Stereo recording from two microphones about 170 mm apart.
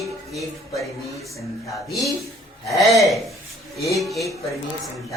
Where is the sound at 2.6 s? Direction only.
Centre (ahead or behind).